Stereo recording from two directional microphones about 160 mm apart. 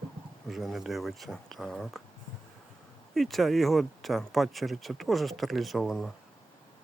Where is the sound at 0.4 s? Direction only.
Centre (ahead or behind).